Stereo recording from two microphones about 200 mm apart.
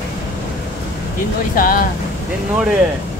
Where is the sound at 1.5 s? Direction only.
45° left (ahead or behind).